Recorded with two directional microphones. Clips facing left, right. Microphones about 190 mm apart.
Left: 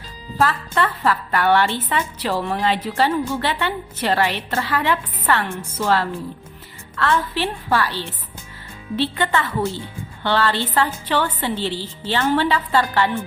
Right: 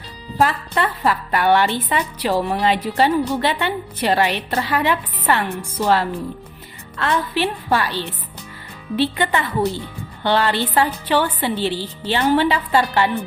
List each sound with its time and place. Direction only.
0.3 s a woman's voice: 15° right (ahead or behind)